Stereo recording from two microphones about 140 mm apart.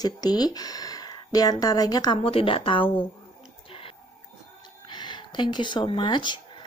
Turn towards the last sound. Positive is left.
turn(degrees=35)  # may be behind; listen again after turning